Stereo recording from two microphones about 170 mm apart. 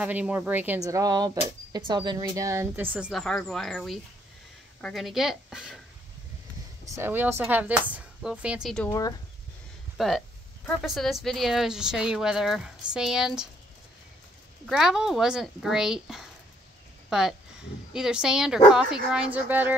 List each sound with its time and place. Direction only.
0.0 s a woman's voice: 10° right (ahead or behind)
0.8 s a woman's voice: 20° right (ahead or behind)
3.1 s speech: 5° left (ahead or behind)
7.0 s a woman's voice: 10° right (ahead or behind); by 8.9 s 5° left (ahead or behind)
9.9 s speech: centre (ahead or behind)
14.7 s speech: 5° right (ahead or behind)